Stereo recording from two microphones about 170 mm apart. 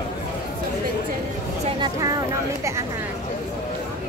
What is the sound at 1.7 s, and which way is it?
Vehicle, 25° right (ahead or behind).